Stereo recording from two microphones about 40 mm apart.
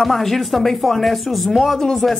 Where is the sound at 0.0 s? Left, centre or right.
Centre.